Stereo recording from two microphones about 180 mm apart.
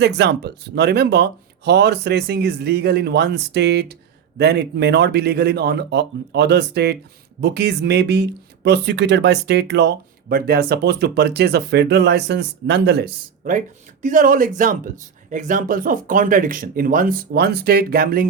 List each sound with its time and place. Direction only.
0.0 s speech: 70° right (ahead or behind)